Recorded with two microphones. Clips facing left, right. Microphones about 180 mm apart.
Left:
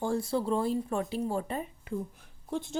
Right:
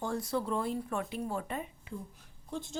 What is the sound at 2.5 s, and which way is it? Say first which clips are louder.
Speech: left 5 dB; 60° left (ahead or behind).